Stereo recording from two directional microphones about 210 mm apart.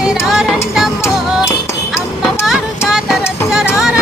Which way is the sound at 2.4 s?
Centre (ahead or behind).